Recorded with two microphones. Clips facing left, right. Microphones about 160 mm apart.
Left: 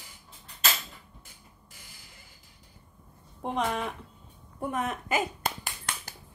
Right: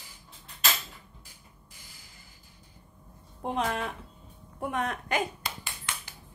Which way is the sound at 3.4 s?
Centre (ahead or behind).